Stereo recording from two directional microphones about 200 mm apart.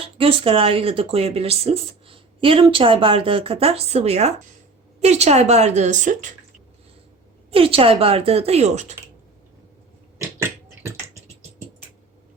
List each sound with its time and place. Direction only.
0.0 s a woman's voice: 30° right (ahead or behind)
7.5 s speech: 30° right (ahead or behind)
10.2 s beatboxing: 10° right (ahead or behind)